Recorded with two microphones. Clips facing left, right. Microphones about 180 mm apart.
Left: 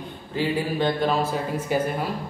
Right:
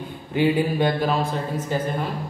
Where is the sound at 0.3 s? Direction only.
15° right (ahead or behind).